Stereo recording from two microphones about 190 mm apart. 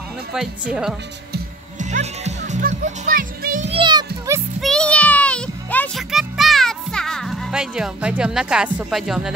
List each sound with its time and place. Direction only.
1.8 s music: 40° right (ahead or behind)
3.7 s children playing: 25° right (ahead or behind)
4.6 s music: 5° left (ahead or behind)